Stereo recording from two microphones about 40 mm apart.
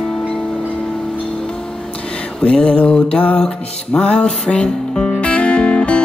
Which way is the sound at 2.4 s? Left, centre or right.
Left.